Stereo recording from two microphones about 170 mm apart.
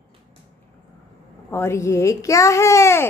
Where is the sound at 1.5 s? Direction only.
15° left (ahead or behind).